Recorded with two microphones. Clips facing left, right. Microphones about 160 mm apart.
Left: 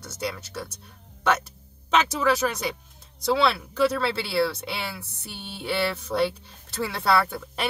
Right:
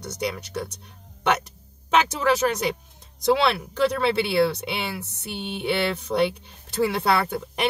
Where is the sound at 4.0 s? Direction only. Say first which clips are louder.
Right 4 dB; 20° right (ahead or behind).